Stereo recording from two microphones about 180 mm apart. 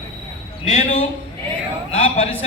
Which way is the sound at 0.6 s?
35° left (ahead or behind).